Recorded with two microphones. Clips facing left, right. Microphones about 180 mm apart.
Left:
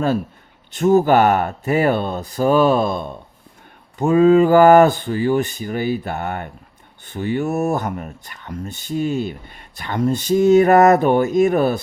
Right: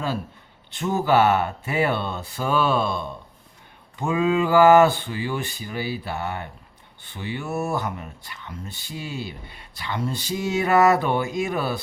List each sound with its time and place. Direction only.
0.7 s speech: 45° left (ahead or behind)